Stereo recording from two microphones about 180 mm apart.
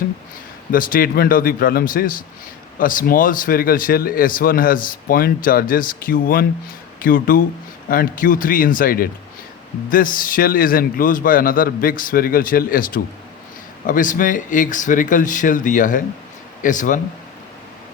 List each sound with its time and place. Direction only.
0.7 s speech: 50° left (ahead or behind)